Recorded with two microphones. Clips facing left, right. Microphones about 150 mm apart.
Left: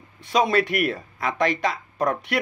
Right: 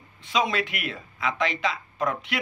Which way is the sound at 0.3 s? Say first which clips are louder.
Left 5 dB; 45° left (ahead or behind).